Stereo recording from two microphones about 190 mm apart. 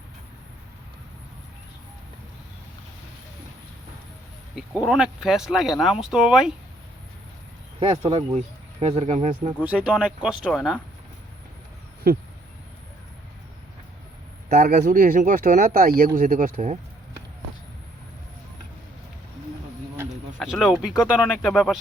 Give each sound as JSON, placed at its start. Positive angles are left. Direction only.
{"t": 4.5, "sound": "speech", "side_deg": 0}
{"t": 7.8, "sound": "speech", "side_deg": -25}
{"t": 9.6, "sound": "speech", "side_deg": -5}
{"t": 12.1, "sound": "speech", "side_deg": -50}
{"t": 14.5, "sound": "speech", "side_deg": -50}
{"t": 20.4, "sound": "speech", "side_deg": 0}